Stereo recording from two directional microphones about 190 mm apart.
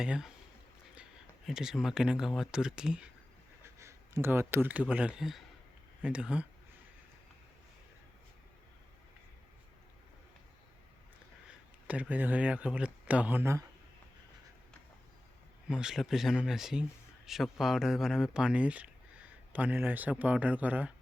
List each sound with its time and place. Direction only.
0.0 s speech: 5° right (ahead or behind)
1.5 s speech: centre (ahead or behind)
11.4 s speech: 5° right (ahead or behind)
15.7 s speech: 5° right (ahead or behind)